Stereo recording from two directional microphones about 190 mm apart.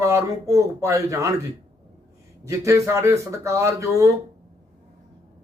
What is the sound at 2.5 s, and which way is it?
Speech, 15° right (ahead or behind).